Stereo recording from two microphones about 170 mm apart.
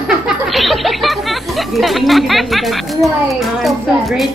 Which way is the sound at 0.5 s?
Centre (ahead or behind).